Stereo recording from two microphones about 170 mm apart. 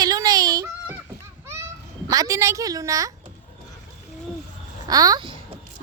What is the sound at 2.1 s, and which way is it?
A woman's voice, 20° right (ahead or behind).